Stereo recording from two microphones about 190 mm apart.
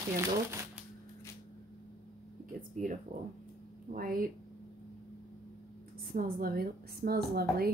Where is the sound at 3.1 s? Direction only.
45° right (ahead or behind).